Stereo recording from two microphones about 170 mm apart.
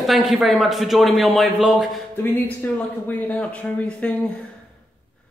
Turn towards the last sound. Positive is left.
turn(degrees=10)  # may be behind; listen again after turning